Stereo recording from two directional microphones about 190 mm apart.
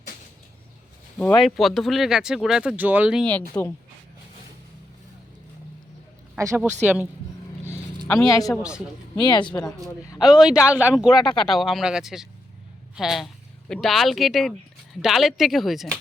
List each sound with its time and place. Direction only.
1.2 s speech: 5° left (ahead or behind)
3.6 s speech: 10° left (ahead or behind)
6.3 s speech: 15° right (ahead or behind)
7.6 s a sound: 15° left (ahead or behind)
8.6 s speech: 5° right (ahead or behind)
9.1 s speech: 25° left (ahead or behind)
10.2 s speech: centre (ahead or behind)